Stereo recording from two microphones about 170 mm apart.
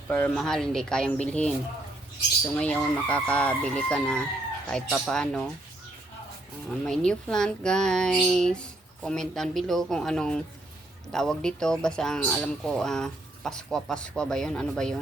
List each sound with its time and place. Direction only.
0.1 s speech: 5° left (ahead or behind)
2.6 s speech: 5° left (ahead or behind)
6.7 s speech: 5° left (ahead or behind)